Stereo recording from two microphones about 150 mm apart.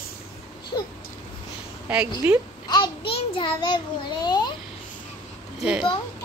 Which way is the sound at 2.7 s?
35° left (ahead or behind).